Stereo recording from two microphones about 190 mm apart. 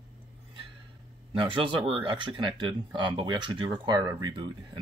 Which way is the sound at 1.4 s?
25° right (ahead or behind).